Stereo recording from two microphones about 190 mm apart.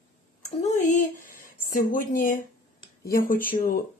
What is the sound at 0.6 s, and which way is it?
A woman's voice, 40° left (ahead or behind).